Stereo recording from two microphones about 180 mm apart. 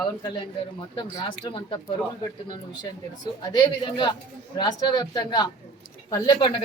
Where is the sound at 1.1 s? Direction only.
25° left (ahead or behind).